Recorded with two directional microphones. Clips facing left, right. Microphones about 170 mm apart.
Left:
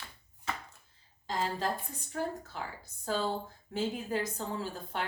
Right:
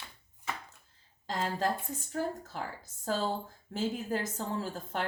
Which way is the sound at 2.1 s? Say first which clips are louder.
Right 1 dB; 45° right (ahead or behind).